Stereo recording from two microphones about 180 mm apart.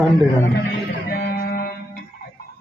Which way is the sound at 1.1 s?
60° left (ahead or behind).